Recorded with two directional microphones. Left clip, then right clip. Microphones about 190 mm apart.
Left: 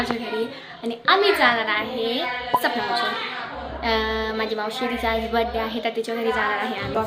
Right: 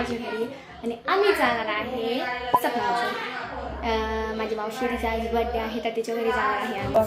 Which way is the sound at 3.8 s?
10° left (ahead or behind).